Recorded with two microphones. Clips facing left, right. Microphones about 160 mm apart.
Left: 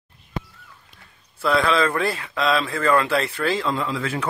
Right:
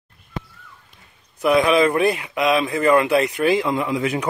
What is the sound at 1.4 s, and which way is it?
A man's voice, 15° right (ahead or behind).